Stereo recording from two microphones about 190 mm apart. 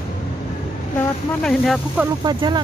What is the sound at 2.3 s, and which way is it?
Speech, 20° right (ahead or behind).